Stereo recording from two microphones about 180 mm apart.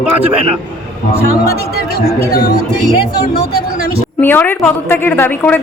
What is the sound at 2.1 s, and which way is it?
Speech, 60° left (ahead or behind).